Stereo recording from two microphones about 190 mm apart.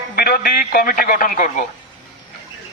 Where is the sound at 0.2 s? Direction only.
55° left (ahead or behind).